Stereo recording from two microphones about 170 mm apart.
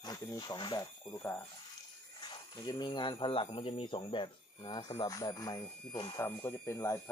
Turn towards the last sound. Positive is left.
turn(degrees=15)  # may be behind; listen again after turning